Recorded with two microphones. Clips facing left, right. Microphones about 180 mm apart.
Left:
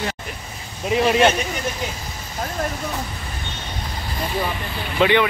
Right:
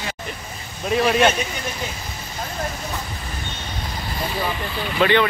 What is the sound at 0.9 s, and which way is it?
Speech, 20° left (ahead or behind).